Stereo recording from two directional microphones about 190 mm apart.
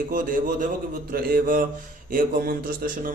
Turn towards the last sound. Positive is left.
turn(degrees=-50)  # may be behind; listen again after turning